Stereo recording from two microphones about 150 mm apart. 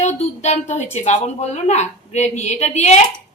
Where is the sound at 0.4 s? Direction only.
50° left (ahead or behind).